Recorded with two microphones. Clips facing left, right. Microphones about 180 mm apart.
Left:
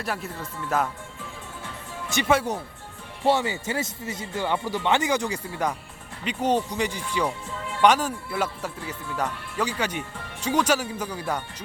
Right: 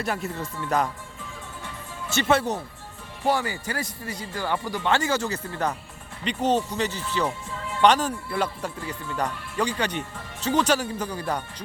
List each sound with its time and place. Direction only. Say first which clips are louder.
0.0 s speech: right 3 dB; centre (ahead or behind)
2.0 s speech: even; 15° left (ahead or behind)
3.2 s speech: left 2 dB; 25° left (ahead or behind)